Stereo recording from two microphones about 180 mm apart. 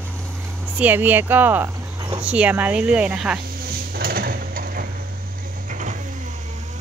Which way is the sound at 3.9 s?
55° right (ahead or behind).